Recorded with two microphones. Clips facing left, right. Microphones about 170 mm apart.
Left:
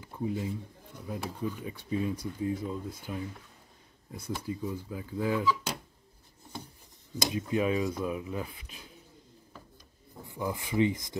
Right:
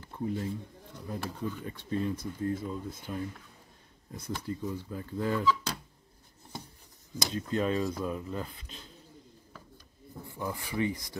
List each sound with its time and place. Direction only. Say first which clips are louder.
0.0 s a sound: left 1 dB; 5° left (ahead or behind)
1.0 s speech: left 1 dB; 5° left (ahead or behind)
7.2 s speech: left 2 dB; 10° left (ahead or behind)
10.2 s speech: left 3 dB; 15° left (ahead or behind)